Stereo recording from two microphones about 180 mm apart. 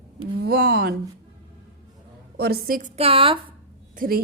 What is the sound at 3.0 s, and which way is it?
Speech, 30° right (ahead or behind).